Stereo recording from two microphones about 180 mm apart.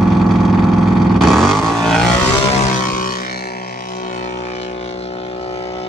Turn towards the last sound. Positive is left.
turn(degrees=35)  # may be behind; listen again after turning